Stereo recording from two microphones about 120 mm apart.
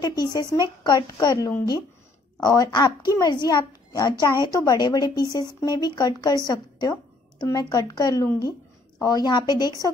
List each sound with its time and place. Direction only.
0.0 s a woman's voice: 35° left (ahead or behind)